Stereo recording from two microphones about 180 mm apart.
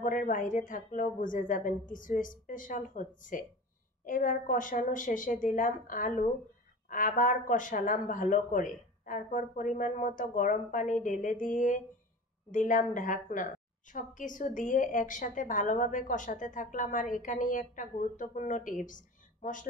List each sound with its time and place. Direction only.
0.0 s a woman's voice: 45° left (ahead or behind)